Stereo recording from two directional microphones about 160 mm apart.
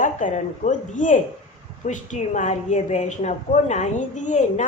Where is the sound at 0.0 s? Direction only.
55° left (ahead or behind).